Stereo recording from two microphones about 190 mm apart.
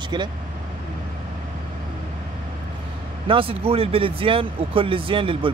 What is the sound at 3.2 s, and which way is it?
Speech, 30° right (ahead or behind).